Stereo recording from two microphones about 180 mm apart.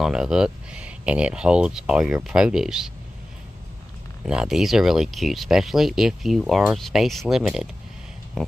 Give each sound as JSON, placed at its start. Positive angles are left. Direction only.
{"t": 0.0, "sound": "speech", "side_deg": -5}
{"t": 4.3, "sound": "speech", "side_deg": -5}